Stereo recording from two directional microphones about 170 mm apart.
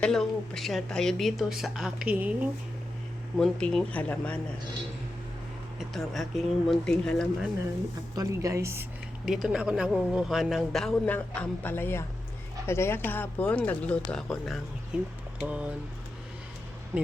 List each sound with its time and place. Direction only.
0.0 s speech: centre (ahead or behind)
3.3 s speech: 5° left (ahead or behind)
5.9 s speech: centre (ahead or behind)
8.1 s a woman's voice: 20° right (ahead or behind)
9.2 s a woman's voice: centre (ahead or behind)